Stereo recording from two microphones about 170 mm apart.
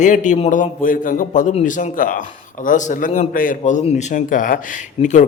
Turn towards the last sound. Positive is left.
turn(degrees=45)  # may be behind; listen again after turning